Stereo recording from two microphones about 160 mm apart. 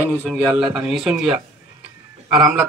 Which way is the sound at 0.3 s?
5° right (ahead or behind).